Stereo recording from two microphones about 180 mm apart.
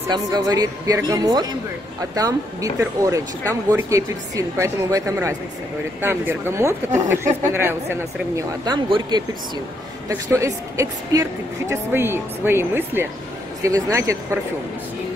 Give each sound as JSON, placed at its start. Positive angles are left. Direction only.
{"t": 0.1, "sound": "speech", "side_deg": -20}